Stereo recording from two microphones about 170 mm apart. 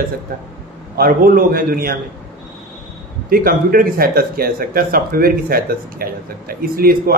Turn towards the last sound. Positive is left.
turn(degrees=-60)  # may be behind; listen again after turning